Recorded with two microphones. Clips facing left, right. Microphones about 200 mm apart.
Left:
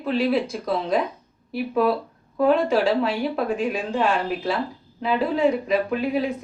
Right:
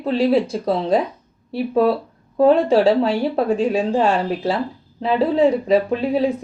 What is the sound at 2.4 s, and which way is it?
Speech, 30° right (ahead or behind).